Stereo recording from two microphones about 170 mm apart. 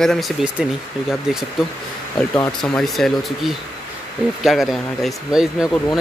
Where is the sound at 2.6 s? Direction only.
Centre (ahead or behind).